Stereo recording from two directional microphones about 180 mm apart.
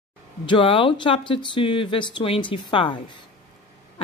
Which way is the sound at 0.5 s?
30° left (ahead or behind).